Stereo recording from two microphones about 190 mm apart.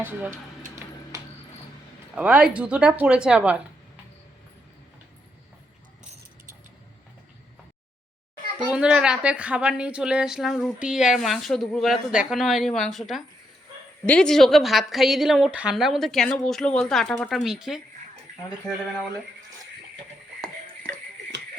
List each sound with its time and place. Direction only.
0.0 s speech: 10° right (ahead or behind)
2.1 s speech: 5° right (ahead or behind)
8.5 s speech: 5° right (ahead or behind)